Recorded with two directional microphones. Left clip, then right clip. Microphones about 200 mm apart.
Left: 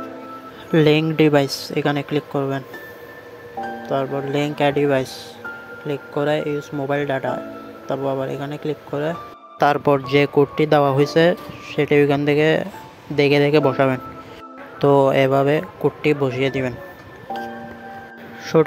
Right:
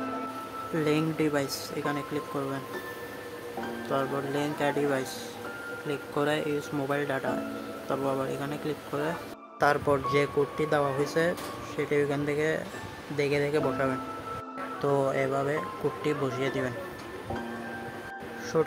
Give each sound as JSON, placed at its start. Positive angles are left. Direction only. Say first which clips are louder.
{"t": 0.7, "sound": "speech", "louder": "left 12 dB", "side_deg": 40}
{"t": 3.9, "sound": "speech", "louder": "left 8 dB", "side_deg": 25}
{"t": 9.6, "sound": "speech", "louder": "left 8 dB", "side_deg": 40}